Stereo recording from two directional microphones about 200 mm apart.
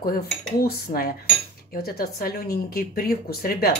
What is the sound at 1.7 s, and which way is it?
A woman's voice, 50° left (ahead or behind).